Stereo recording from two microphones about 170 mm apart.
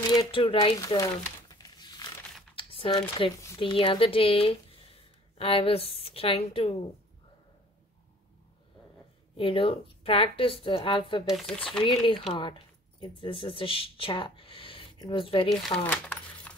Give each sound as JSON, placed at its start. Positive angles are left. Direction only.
{"t": 0.3, "sound": "speech", "side_deg": 30}
{"t": 0.6, "sound": "speech", "side_deg": 20}
{"t": 1.5, "sound": "crumpling", "side_deg": 25}
{"t": 2.5, "sound": "speech", "side_deg": 30}
{"t": 9.4, "sound": "speech", "side_deg": 30}
{"t": 11.2, "sound": "speech", "side_deg": 0}
{"t": 11.8, "sound": "speech", "side_deg": 30}
{"t": 15.9, "sound": "a sound", "side_deg": 10}